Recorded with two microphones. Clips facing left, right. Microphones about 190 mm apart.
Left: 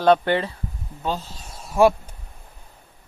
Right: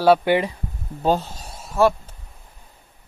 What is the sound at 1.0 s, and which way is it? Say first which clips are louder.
Speech: right 7 dB; 40° right (ahead or behind).